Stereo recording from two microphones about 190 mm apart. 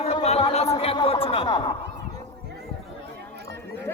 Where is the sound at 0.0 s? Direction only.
35° left (ahead or behind).